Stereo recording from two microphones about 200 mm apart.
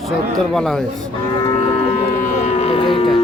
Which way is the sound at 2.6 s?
30° left (ahead or behind).